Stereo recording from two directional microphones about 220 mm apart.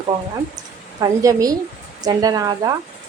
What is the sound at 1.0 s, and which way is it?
Speech, 15° right (ahead or behind).